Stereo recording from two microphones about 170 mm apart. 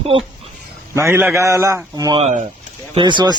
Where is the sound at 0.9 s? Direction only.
15° right (ahead or behind).